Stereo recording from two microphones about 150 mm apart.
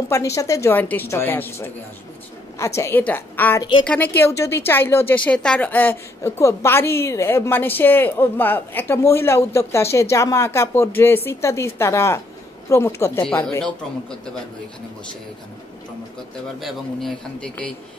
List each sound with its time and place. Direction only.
0.1 s speech: 20° left (ahead or behind)
16.5 s a man's voice: centre (ahead or behind)